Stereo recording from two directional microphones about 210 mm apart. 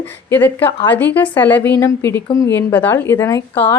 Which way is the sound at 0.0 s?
10° left (ahead or behind).